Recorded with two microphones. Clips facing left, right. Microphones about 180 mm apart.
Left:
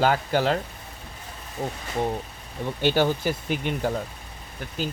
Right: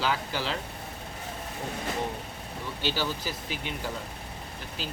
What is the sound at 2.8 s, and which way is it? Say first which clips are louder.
Speech: left 9 dB; 55° left (ahead or behind).